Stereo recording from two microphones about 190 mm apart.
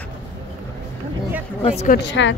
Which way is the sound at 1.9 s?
65° left (ahead or behind).